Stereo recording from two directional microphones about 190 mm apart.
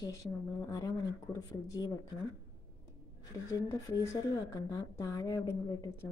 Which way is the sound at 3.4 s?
15° left (ahead or behind).